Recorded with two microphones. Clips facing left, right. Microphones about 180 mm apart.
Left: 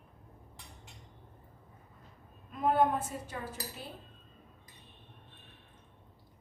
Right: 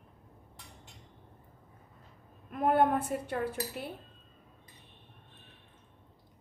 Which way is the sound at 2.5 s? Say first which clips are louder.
Right 2 dB; 55° right (ahead or behind).